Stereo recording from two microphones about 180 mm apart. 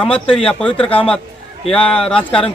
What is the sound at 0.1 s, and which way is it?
Speech, 30° left (ahead or behind).